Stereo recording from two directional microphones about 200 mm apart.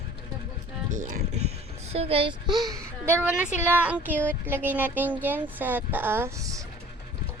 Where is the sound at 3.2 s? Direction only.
5° right (ahead or behind).